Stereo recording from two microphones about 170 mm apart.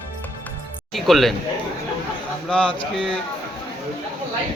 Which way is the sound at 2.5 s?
5° left (ahead or behind).